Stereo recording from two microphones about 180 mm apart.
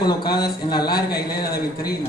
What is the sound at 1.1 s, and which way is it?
Speech, 60° left (ahead or behind).